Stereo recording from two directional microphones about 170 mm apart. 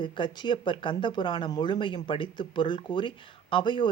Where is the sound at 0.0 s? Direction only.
30° left (ahead or behind).